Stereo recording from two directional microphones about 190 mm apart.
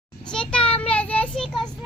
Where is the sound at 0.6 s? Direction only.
30° left (ahead or behind).